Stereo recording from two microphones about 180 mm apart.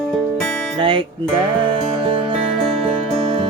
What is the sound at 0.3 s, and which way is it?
Music, 5° left (ahead or behind).